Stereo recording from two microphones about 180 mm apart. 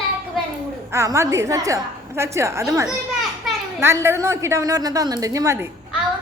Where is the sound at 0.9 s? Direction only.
15° right (ahead or behind).